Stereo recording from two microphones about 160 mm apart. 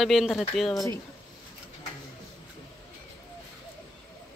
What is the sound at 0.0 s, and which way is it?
Speech, centre (ahead or behind).